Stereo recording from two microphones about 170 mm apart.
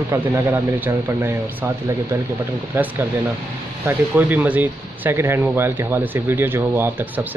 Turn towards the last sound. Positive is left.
turn(degrees=-15)  # may be behind; listen again after turning